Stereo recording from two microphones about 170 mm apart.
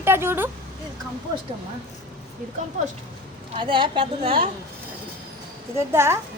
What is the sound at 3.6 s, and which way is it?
Speech, 30° right (ahead or behind).